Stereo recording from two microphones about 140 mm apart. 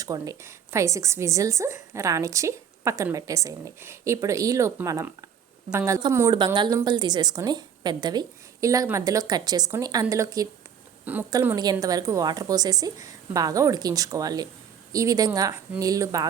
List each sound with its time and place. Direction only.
0.0 s speech: 25° right (ahead or behind)
6.4 s a woman's voice: 30° right (ahead or behind)
11.0 s speech: 10° right (ahead or behind)
11.3 s speech: 25° right (ahead or behind)